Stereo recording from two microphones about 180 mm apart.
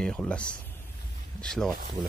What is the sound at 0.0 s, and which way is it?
Speech, 5° left (ahead or behind).